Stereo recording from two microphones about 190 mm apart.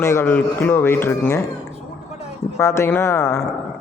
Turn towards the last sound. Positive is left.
turn(degrees=10)  # may be behind; listen again after turning